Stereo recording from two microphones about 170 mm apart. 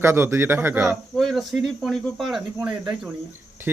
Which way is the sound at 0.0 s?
15° right (ahead or behind).